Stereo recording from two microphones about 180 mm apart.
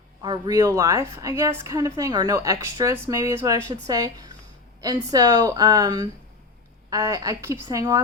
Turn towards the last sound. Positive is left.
turn(degrees=-20)  # may be behind; listen again after turning